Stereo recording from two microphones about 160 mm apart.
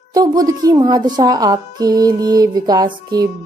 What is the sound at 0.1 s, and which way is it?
A woman's voice, 25° right (ahead or behind).